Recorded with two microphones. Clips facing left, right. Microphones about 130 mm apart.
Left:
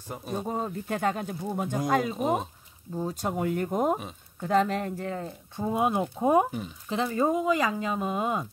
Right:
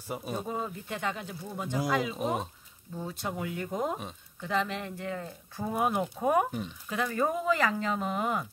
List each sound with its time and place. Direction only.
0.1 s speech: 5° right (ahead or behind)
0.5 s speech: 40° left (ahead or behind)
2.1 s speech: centre (ahead or behind)
3.0 s speech: 40° left (ahead or behind)
5.6 s speech: 25° left (ahead or behind)